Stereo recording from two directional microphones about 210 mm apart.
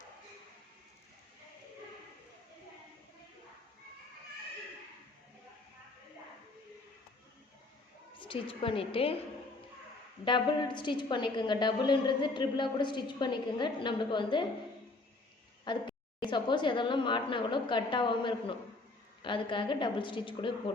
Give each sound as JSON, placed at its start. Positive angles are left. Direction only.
{"t": 8.2, "sound": "a woman's voice", "side_deg": 25}
{"t": 10.2, "sound": "a woman's voice", "side_deg": 20}
{"t": 15.6, "sound": "a woman's voice", "side_deg": 20}